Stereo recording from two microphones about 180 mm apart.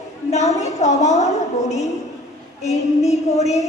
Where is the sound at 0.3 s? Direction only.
40° left (ahead or behind).